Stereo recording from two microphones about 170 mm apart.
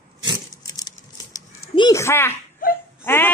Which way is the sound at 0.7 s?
20° left (ahead or behind).